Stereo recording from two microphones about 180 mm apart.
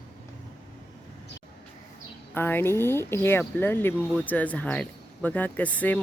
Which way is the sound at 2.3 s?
10° left (ahead or behind).